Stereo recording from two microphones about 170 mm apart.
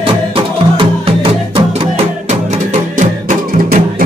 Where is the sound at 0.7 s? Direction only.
30° right (ahead or behind).